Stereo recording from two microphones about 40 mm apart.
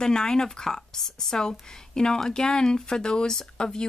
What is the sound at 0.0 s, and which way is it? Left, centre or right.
Speech, centre.